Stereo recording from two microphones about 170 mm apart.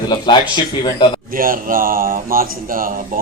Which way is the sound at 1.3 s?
55° right (ahead or behind).